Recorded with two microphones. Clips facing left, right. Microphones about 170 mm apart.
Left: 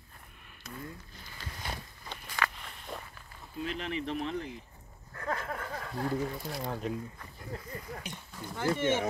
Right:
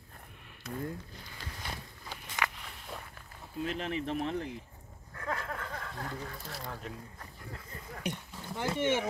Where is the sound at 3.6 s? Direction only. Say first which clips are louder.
Right 1 dB; 45° right (ahead or behind).